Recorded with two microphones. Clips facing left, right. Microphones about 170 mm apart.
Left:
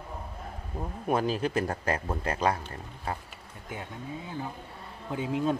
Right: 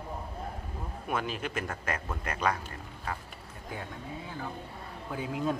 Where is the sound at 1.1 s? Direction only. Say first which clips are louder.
Left 6 dB; 35° left (ahead or behind).